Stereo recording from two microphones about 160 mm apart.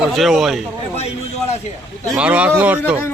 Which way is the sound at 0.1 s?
Centre (ahead or behind).